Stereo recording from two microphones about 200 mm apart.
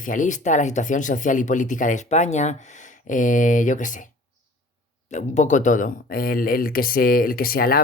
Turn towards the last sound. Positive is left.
turn(degrees=45)  # may be behind; listen again after turning